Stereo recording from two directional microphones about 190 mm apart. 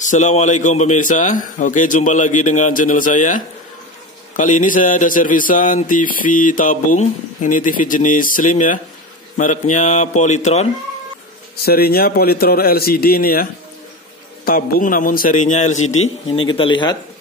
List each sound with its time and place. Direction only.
0.0 s a man's voice: 40° left (ahead or behind)
11.6 s a man's voice: 55° left (ahead or behind); by 16.9 s 25° left (ahead or behind)